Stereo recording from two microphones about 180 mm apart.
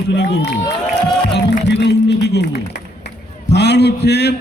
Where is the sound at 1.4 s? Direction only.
75° left (ahead or behind).